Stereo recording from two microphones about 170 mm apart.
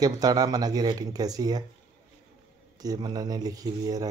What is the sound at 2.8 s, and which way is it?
Speech, 25° right (ahead or behind).